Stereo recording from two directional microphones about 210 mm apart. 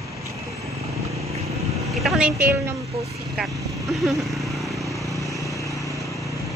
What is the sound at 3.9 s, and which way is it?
Vehicle, centre (ahead or behind).